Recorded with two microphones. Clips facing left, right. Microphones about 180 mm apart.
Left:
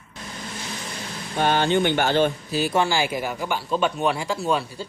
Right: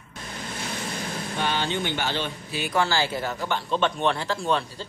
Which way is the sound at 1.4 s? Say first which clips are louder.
Left 8 dB; 50° left (ahead or behind).